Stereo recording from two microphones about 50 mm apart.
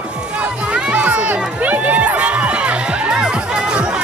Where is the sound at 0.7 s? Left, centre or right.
Right.